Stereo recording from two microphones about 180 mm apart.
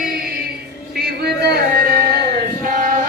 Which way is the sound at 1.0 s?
65° right (ahead or behind).